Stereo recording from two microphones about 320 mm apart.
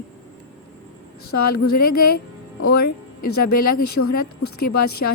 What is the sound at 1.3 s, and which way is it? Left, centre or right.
Speech, left.